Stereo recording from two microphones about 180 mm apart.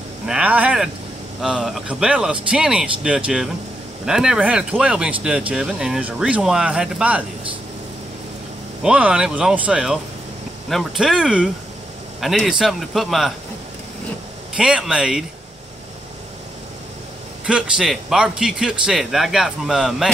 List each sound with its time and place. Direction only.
0.3 s a man's voice: 10° right (ahead or behind)
8.8 s a man's voice: 5° right (ahead or behind)
14.6 s a man's voice: 5° right (ahead or behind)
17.5 s a man's voice: 5° right (ahead or behind)